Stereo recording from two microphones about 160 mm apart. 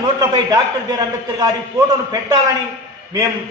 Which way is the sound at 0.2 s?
20° right (ahead or behind).